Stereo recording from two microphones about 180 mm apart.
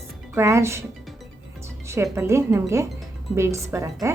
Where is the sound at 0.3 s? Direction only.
15° right (ahead or behind).